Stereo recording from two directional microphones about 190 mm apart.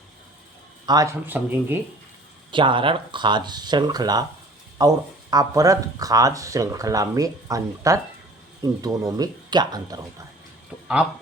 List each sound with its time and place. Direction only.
0.9 s speech: 15° right (ahead or behind)
2.5 s speech: 25° right (ahead or behind)